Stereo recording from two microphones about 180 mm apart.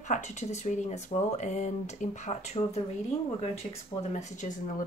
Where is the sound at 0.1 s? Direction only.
40° left (ahead or behind).